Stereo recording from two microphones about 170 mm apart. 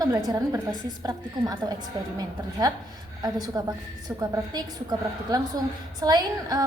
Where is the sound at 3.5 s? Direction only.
25° right (ahead or behind).